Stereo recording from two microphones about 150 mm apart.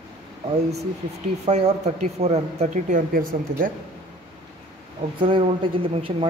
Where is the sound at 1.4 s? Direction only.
50° right (ahead or behind); by 3.4 s 70° right (ahead or behind).